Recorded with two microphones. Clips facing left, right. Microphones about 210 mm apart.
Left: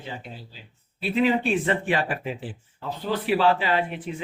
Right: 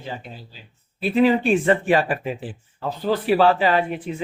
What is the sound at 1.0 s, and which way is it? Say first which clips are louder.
Speech: right 5 dB; 45° right (ahead or behind).